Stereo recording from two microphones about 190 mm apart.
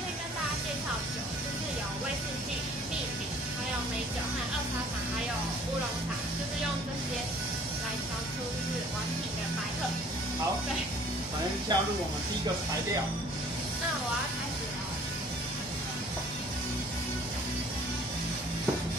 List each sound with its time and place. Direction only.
11.7 s snake: 25° right (ahead or behind)